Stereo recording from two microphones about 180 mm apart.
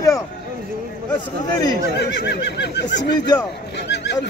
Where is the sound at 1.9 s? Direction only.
70° left (ahead or behind).